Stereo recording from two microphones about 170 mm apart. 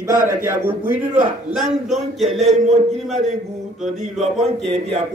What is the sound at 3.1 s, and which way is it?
Speech, 40° right (ahead or behind).